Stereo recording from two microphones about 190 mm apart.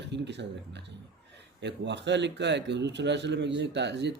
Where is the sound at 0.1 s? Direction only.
65° right (ahead or behind).